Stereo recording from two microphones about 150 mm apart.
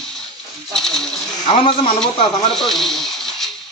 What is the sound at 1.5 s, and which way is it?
Speech, 35° left (ahead or behind).